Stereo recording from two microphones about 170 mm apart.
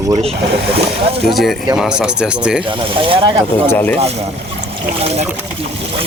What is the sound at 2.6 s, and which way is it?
Speech, 30° right (ahead or behind).